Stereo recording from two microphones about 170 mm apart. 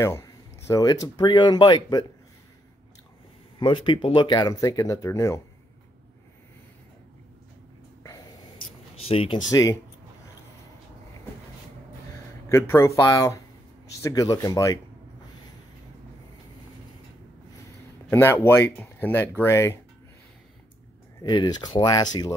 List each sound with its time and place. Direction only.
0.7 s speech: 20° left (ahead or behind)
3.5 s speech: 30° left (ahead or behind)
9.0 s speech: 35° left (ahead or behind)
9.5 s speech: 20° left (ahead or behind)
12.4 s speech: 15° left (ahead or behind)
18.1 s speech: 15° left (ahead or behind)
21.2 s speech: 25° left (ahead or behind)